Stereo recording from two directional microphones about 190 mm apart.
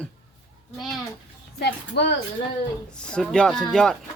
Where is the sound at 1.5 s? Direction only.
60° left (ahead or behind).